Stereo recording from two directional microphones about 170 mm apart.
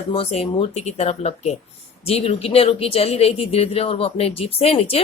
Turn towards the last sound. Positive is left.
turn(degrees=35)  # may be behind; listen again after turning